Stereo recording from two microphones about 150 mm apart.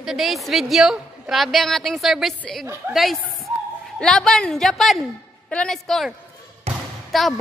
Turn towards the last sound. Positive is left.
turn(degrees=0)  # may be behind; listen again after turning